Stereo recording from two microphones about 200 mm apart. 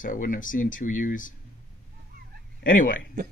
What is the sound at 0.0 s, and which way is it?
Speech, 40° left (ahead or behind).